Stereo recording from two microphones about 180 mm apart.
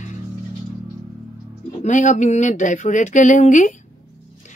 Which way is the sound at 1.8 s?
45° left (ahead or behind).